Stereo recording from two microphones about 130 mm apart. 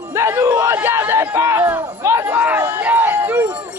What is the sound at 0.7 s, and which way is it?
Speech, 15° right (ahead or behind).